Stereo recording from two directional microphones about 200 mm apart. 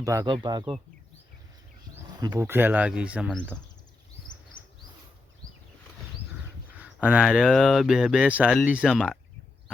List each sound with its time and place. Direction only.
0.0 s speech: 15° right (ahead or behind)
2.1 s speech: 20° right (ahead or behind)
6.7 s speech: 5° right (ahead or behind)